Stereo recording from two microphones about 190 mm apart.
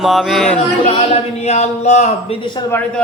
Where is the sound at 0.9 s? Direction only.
35° left (ahead or behind).